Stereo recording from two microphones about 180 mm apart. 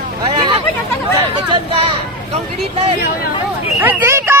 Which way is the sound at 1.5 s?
30° right (ahead or behind).